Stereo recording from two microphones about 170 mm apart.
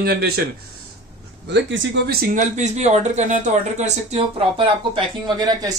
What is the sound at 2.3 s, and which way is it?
A man's voice, 45° right (ahead or behind).